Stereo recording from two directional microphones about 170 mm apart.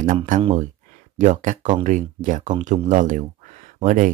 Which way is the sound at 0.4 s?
35° right (ahead or behind).